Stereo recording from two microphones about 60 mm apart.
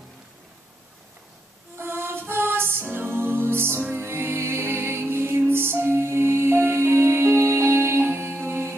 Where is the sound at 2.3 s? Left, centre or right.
Right.